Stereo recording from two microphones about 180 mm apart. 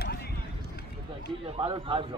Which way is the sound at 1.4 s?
30° right (ahead or behind).